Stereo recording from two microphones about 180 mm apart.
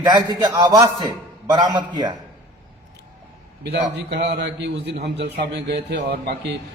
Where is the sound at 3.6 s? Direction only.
65° right (ahead or behind).